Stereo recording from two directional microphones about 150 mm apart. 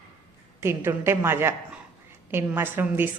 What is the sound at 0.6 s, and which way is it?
A man's voice, 15° right (ahead or behind).